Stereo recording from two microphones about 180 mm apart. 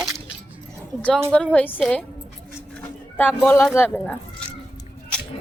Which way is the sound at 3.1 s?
10° left (ahead or behind).